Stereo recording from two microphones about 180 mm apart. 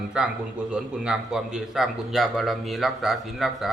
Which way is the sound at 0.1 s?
5° right (ahead or behind).